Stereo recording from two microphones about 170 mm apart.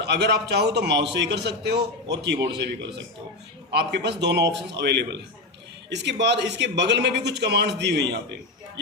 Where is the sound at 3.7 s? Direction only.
80° right.